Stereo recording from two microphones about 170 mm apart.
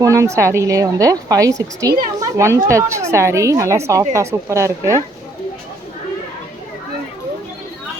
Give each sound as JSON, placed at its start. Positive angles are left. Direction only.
{"t": 0.0, "sound": "a woman's voice", "side_deg": -20}